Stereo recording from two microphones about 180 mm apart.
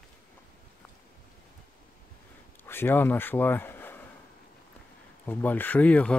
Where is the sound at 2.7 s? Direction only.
10° left (ahead or behind).